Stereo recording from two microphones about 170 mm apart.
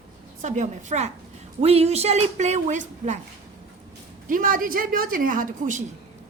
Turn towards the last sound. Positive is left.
turn(degrees=-50)  # may be behind; listen again after turning